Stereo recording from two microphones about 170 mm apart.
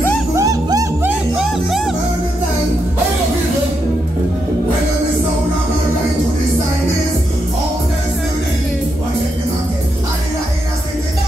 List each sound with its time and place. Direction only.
0.4 s music: 20° right (ahead or behind)
1.4 s music: centre (ahead or behind)